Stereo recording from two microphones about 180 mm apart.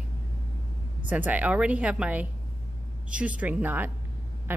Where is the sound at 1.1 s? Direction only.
10° right (ahead or behind).